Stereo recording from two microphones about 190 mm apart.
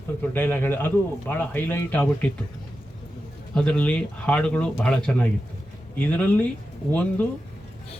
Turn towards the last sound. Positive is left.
turn(degrees=5)  # may be behind; listen again after turning